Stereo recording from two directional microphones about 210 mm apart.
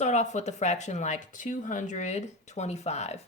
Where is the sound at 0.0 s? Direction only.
35° left (ahead or behind).